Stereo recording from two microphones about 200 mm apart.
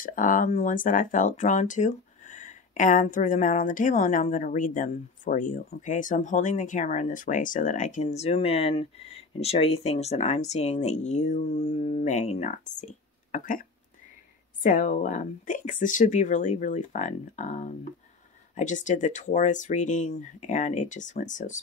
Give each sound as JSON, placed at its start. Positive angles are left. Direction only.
{"t": 0.0, "sound": "speech", "side_deg": 40}